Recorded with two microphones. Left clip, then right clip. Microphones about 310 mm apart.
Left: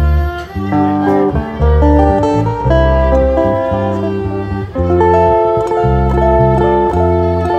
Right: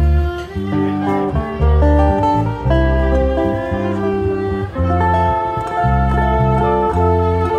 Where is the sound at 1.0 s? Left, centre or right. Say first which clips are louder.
Left 6 dB; left.